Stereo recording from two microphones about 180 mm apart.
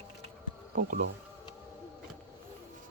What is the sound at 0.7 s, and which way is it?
Speech, 55° right (ahead or behind).